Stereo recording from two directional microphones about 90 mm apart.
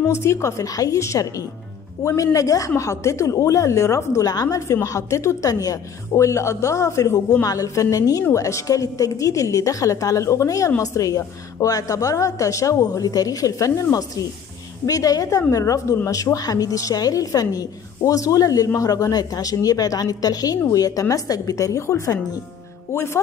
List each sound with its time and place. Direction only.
0.1 s a woman's voice: 30° left (ahead or behind)